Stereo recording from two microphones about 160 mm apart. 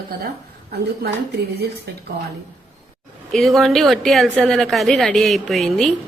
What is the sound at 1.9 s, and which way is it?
Speech, 90° right.